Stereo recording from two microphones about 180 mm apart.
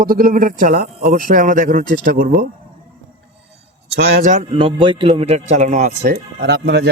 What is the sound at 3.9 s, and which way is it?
Speech, 60° right (ahead or behind).